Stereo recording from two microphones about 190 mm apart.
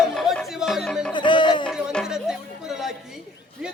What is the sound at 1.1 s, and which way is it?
Music, 25° left (ahead or behind).